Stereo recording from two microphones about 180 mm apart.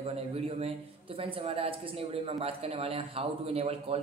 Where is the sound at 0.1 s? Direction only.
35° right (ahead or behind).